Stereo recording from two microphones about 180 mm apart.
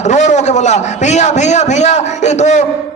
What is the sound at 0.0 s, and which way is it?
A man's voice, 40° left (ahead or behind).